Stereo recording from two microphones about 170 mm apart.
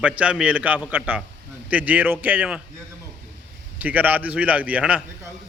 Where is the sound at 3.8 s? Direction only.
10° right (ahead or behind).